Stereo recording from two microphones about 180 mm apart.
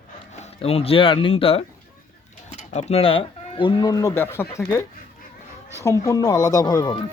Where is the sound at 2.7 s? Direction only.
35° left (ahead or behind).